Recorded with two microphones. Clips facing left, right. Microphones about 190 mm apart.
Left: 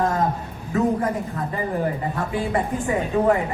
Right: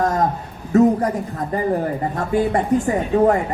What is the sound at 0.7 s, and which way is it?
Speech, 40° right (ahead or behind).